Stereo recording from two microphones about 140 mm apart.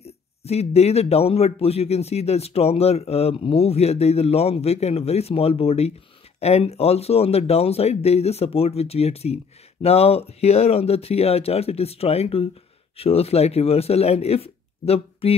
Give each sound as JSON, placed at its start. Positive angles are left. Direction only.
{"t": 0.0, "sound": "speech", "side_deg": 50}